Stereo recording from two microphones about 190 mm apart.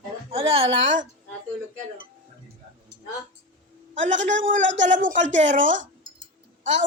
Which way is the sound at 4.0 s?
40° right (ahead or behind).